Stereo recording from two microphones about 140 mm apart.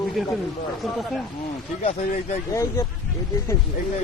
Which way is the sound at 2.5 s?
20° left (ahead or behind).